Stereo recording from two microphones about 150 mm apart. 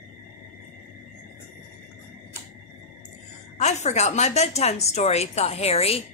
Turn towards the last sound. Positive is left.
turn(degrees=45)  # may be behind; listen again after turning